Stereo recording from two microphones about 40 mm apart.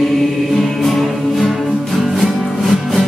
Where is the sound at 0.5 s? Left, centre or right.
Centre.